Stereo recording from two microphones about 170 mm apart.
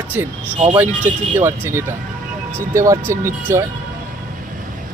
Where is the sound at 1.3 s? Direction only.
15° right (ahead or behind).